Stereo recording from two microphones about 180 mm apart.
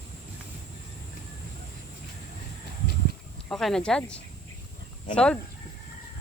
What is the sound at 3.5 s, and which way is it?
Speech, centre (ahead or behind).